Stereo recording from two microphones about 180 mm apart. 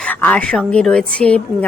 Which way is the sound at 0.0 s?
10° left (ahead or behind).